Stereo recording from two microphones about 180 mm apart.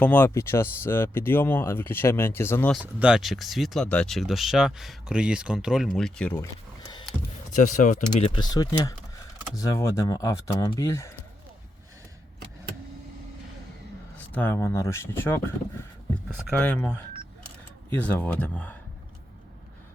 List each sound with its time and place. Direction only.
0.0 s speech: 10° left (ahead or behind)
2.7 s speech: 5° right (ahead or behind)
7.5 s speech: 45° left (ahead or behind)
8.3 s speech: 25° left (ahead or behind)
14.2 s speech: 10° left (ahead or behind)
17.9 s speech: 10° left (ahead or behind)